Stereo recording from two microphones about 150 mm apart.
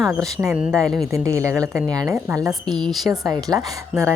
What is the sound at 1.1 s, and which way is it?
A woman's voice, 20° right (ahead or behind).